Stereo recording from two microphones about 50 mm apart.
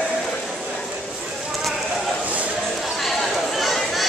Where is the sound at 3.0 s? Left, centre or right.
Centre.